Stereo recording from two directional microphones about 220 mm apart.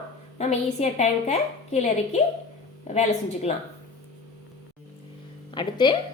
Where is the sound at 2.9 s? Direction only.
30° left (ahead or behind).